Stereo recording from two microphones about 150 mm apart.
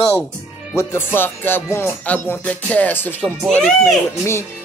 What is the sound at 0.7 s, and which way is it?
Music, 20° left (ahead or behind).